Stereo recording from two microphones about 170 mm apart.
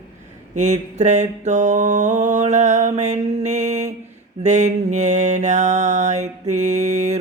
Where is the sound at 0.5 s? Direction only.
45° right (ahead or behind).